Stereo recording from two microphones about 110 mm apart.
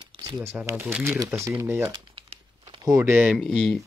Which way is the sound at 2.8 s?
30° right (ahead or behind).